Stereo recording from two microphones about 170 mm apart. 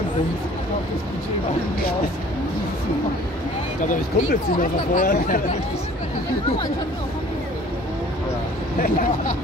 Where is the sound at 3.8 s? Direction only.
50° left (ahead or behind).